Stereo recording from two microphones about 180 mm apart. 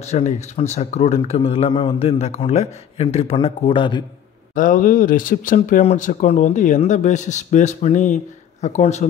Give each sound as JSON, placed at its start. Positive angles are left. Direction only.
{"t": 0.0, "sound": "speech", "side_deg": 40}
{"t": 4.6, "sound": "speech", "side_deg": 45}